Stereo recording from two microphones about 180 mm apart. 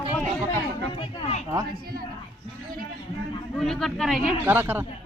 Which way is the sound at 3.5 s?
Centre (ahead or behind).